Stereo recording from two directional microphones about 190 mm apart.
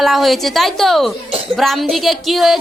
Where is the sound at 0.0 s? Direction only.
Centre (ahead or behind).